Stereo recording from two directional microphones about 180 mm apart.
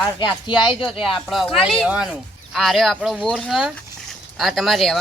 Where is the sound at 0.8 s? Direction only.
Centre (ahead or behind).